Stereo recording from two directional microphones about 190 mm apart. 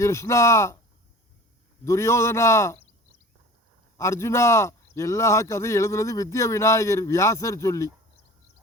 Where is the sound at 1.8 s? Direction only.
15° left (ahead or behind).